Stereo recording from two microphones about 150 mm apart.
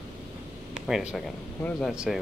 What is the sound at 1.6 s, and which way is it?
Speech, 5° left (ahead or behind).